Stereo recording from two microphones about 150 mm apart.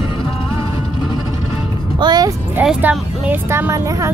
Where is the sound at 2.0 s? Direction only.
25° right (ahead or behind).